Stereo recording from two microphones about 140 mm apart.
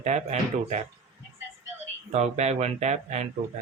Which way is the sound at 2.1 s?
55° right (ahead or behind).